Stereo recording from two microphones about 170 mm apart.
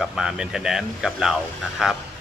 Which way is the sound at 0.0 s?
5° right (ahead or behind).